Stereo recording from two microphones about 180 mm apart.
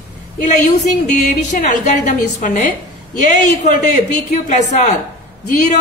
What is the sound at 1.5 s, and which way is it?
A woman's voice, 40° left (ahead or behind).